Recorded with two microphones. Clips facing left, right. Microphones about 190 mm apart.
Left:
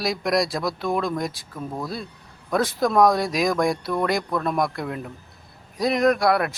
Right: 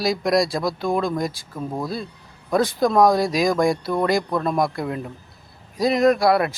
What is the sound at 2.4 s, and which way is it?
Speech, centre (ahead or behind).